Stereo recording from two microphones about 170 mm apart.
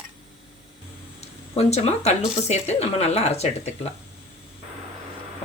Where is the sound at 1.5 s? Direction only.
40° left (ahead or behind).